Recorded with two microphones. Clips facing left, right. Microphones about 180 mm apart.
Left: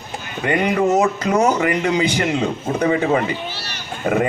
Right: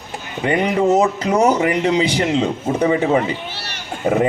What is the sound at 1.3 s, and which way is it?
A man's voice, 15° right (ahead or behind).